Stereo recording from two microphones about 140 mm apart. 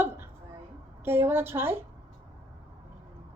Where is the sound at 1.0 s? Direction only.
15° right (ahead or behind).